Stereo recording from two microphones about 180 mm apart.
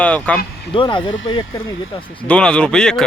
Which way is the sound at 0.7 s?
25° left (ahead or behind).